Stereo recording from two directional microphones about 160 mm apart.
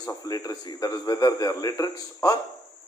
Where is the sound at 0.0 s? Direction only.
25° left (ahead or behind).